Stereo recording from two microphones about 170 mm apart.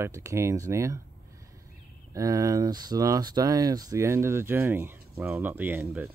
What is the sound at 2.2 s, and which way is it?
Speech, 20° right (ahead or behind).